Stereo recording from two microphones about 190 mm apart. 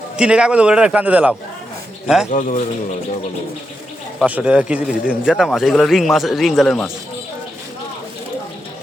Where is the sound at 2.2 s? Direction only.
40° left (ahead or behind).